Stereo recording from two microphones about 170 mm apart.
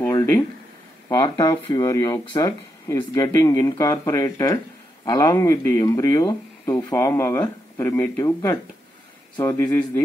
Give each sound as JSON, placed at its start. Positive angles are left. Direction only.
{"t": 1.0, "sound": "speech", "side_deg": 25}